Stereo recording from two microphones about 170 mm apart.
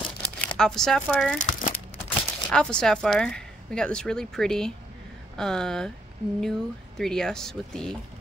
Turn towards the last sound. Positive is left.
turn(degrees=5)  # may be behind; listen again after turning